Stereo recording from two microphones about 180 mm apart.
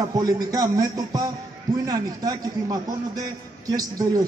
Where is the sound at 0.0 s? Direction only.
20° right (ahead or behind).